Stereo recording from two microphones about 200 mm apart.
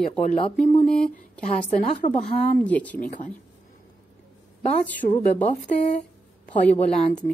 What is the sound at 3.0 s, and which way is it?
Speech, 40° left (ahead or behind).